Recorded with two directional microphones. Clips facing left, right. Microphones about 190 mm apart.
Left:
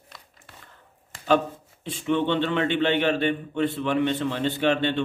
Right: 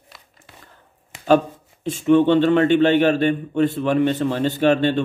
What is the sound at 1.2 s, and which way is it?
A man's voice, 45° right (ahead or behind).